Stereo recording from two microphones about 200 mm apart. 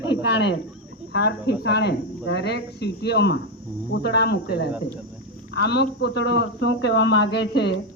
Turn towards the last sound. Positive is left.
turn(degrees=55)  # may be behind; listen again after turning